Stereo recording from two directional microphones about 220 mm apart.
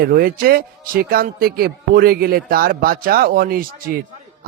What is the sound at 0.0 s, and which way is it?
A man's voice, 40° right (ahead or behind).